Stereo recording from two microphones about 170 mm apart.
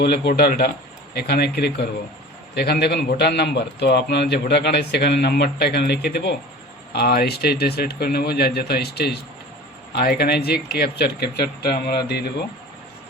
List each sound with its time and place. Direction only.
0.0 s a man's voice: 70° left (ahead or behind)